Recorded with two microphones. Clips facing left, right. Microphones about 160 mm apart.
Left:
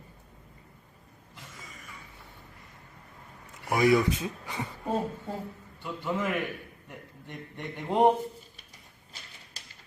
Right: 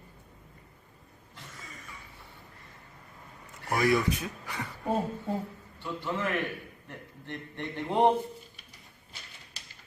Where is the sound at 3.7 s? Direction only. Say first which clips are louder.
Left 3 dB; 20° left (ahead or behind).